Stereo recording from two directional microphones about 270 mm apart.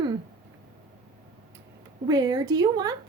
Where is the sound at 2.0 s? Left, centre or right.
Centre.